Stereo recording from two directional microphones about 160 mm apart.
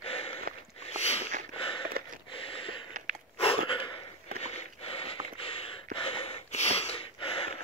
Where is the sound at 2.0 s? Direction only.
75° right (ahead or behind).